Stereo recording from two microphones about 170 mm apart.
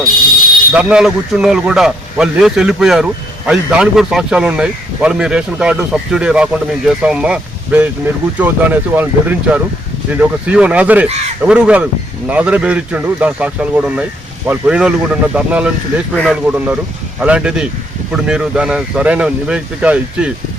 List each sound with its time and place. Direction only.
0.7 s speech: 5° right (ahead or behind)